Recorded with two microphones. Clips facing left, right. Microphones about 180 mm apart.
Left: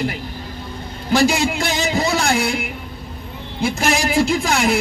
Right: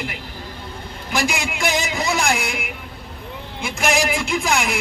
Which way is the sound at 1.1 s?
30° left (ahead or behind).